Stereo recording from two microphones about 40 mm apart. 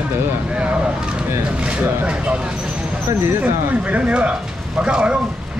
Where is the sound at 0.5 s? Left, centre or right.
Right.